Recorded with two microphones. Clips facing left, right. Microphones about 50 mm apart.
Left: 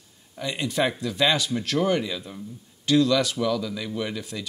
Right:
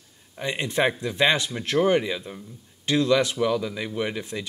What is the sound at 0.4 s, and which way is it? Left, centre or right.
Speech, right.